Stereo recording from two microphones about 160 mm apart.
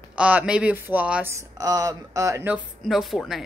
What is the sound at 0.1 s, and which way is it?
Speech, 10° right (ahead or behind).